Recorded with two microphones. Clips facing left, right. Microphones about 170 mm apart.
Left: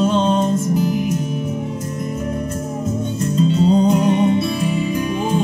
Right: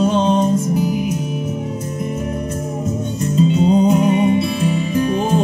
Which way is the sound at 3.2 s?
5° right (ahead or behind).